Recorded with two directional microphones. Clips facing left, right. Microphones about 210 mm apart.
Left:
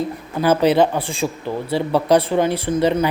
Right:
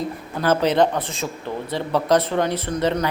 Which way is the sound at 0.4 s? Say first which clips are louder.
Left 3 dB; 10° left (ahead or behind).